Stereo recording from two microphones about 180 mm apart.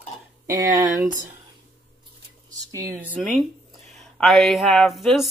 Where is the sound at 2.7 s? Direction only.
20° right (ahead or behind).